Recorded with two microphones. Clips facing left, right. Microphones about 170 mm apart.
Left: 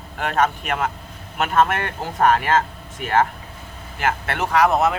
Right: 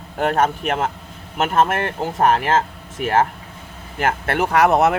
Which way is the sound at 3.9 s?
45° right (ahead or behind).